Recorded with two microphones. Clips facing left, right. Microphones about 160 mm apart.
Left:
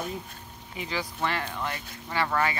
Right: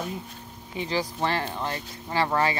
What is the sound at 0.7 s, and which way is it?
Speech, 30° right (ahead or behind).